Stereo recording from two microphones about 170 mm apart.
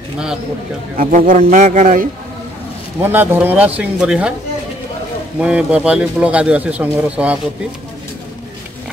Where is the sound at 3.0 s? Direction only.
10° right (ahead or behind).